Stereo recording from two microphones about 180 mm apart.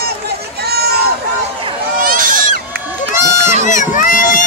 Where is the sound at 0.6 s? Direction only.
60° right (ahead or behind).